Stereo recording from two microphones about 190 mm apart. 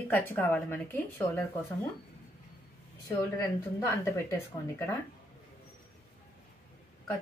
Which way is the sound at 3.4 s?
15° left (ahead or behind).